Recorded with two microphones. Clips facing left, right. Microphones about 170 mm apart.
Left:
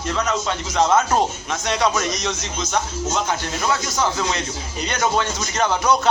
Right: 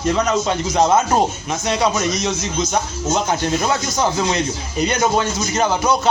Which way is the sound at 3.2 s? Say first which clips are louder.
Right 4 dB; 35° right (ahead or behind).